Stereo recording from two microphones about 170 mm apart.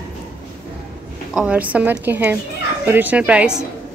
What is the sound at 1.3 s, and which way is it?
A woman's voice, 5° right (ahead or behind).